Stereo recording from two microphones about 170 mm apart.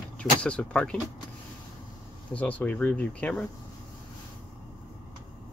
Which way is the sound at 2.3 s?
10° left (ahead or behind).